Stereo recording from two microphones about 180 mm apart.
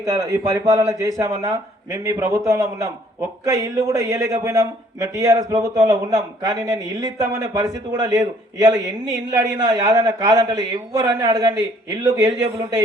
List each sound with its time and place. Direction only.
0.0 s a man's voice: 20° right (ahead or behind)